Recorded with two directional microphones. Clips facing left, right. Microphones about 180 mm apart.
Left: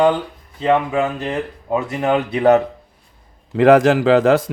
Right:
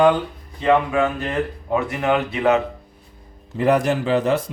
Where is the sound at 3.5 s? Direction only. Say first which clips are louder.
Left 7 dB; 90° left.